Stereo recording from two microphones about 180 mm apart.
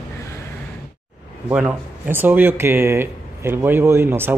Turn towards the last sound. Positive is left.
turn(degrees=-10)  # may be behind; listen again after turning